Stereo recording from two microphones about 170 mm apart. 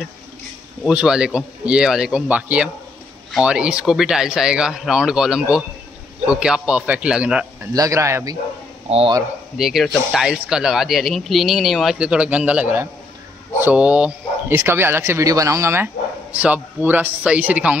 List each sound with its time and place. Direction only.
0.8 s speech: 5° right (ahead or behind)
7.7 s speech: 20° right (ahead or behind)
8.8 s speech: 35° right (ahead or behind)
9.6 s speech: centre (ahead or behind)